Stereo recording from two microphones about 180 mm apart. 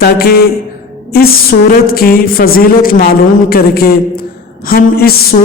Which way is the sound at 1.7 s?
55° left (ahead or behind).